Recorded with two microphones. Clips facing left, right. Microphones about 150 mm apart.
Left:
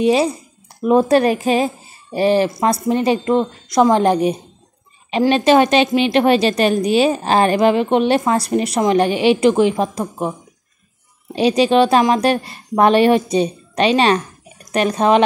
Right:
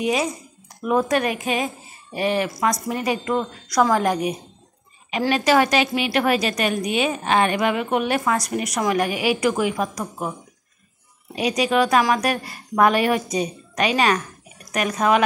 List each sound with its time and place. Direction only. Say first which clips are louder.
0.0 s a woman's voice: left 7 dB; 30° left (ahead or behind)
11.3 s speech: left 7 dB; 30° left (ahead or behind)